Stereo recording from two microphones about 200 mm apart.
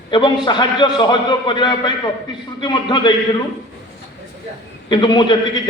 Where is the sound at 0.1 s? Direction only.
25° left (ahead or behind).